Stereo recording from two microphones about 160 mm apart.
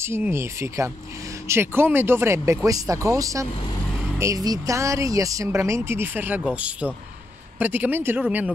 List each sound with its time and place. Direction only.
0.0 s speech: 15° right (ahead or behind)